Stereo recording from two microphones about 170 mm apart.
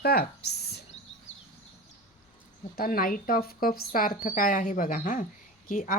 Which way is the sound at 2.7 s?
60° left (ahead or behind).